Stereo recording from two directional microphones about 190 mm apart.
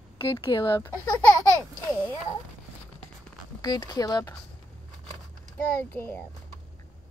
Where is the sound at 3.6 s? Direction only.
20° left (ahead or behind).